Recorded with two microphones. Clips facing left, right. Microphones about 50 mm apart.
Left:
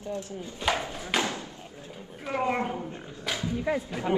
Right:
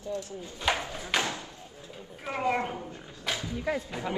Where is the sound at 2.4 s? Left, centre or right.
Left.